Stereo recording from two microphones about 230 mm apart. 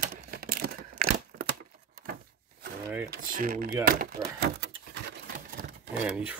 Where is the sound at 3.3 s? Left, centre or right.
Right.